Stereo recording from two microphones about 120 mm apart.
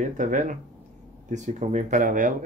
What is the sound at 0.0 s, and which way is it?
Speech, 90° right.